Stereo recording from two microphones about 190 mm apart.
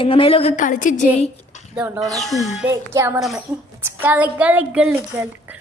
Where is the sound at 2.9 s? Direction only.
15° right (ahead or behind).